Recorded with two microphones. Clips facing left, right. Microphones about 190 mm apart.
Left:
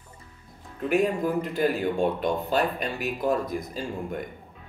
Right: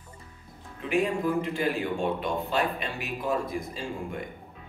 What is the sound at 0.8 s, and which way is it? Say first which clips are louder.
Speech: left 2 dB; 40° left (ahead or behind).